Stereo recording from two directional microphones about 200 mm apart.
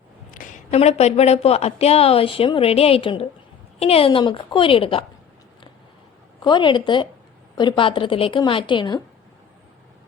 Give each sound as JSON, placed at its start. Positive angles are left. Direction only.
{"t": 0.3, "sound": "a woman's voice", "side_deg": 40}
{"t": 6.4, "sound": "a woman's voice", "side_deg": 25}